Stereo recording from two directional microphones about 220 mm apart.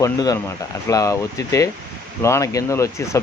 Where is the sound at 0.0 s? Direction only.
15° left (ahead or behind).